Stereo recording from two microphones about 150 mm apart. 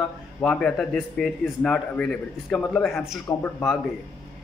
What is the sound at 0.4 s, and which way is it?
A man's voice, 5° left (ahead or behind).